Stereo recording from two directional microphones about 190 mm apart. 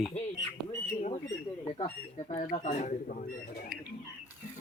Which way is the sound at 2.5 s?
40° left (ahead or behind).